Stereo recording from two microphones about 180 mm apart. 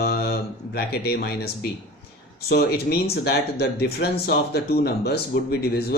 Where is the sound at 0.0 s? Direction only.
60° left (ahead or behind).